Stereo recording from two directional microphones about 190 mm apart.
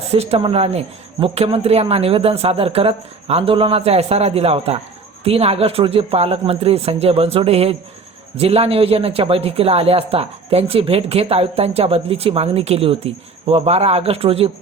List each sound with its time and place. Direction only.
0.1 s speech: 35° right (ahead or behind)